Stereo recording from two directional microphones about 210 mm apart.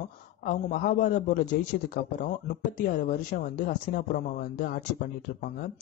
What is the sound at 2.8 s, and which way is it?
Speech, 40° left (ahead or behind).